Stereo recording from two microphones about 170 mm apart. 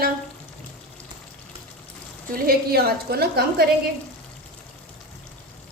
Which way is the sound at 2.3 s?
65° right (ahead or behind).